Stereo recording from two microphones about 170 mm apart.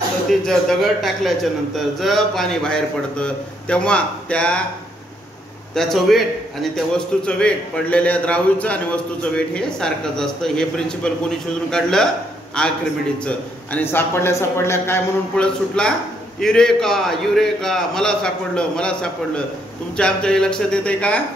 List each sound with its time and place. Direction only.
0.3 s a man's voice: centre (ahead or behind)
5.8 s a man's voice: centre (ahead or behind)